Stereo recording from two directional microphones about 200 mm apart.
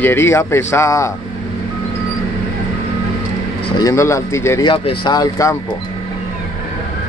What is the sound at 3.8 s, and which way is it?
Speech, 15° left (ahead or behind).